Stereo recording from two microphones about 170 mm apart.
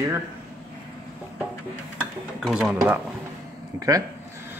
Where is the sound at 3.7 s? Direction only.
20° right (ahead or behind).